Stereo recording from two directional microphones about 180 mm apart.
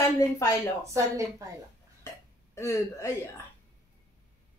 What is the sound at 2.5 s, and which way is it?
Speech, 15° left (ahead or behind).